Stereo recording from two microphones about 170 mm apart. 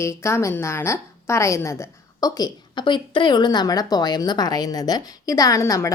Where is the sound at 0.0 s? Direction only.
15° left (ahead or behind).